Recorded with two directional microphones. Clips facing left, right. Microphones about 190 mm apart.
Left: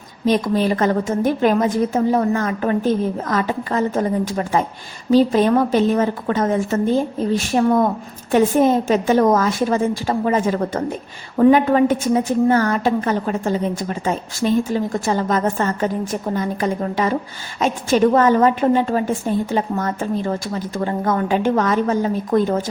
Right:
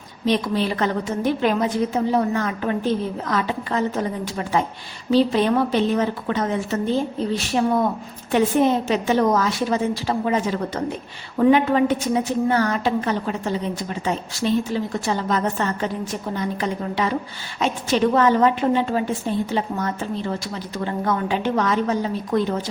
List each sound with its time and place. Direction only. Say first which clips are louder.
0.3 s a woman's voice: left 4 dB; 45° left (ahead or behind)